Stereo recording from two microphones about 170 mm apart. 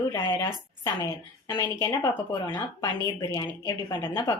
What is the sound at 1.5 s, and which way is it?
A woman's voice, 15° left (ahead or behind).